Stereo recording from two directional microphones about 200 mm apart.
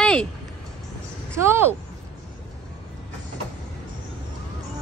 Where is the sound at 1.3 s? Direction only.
10° right (ahead or behind).